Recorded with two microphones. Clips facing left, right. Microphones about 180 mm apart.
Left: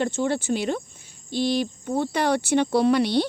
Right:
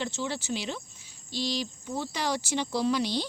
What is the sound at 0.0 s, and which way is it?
Speech, 50° left (ahead or behind).